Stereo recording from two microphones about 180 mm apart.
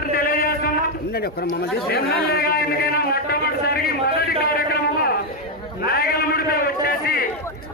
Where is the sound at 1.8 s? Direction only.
60° left (ahead or behind).